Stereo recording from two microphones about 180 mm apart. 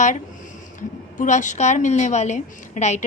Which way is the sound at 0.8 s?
45° left (ahead or behind).